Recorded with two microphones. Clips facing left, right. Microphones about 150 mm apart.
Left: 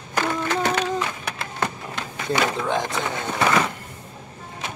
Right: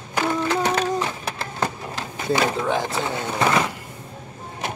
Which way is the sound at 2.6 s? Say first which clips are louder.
Right 1 dB; 5° right (ahead or behind).